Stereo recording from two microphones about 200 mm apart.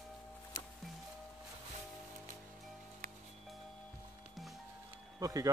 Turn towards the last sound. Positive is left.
turn(degrees=-15)  # may be behind; listen again after turning